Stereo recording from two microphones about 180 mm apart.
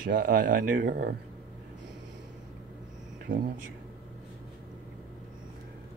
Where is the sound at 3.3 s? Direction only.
50° right (ahead or behind).